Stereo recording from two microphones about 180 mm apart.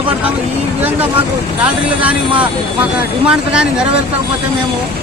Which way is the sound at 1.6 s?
5° right (ahead or behind).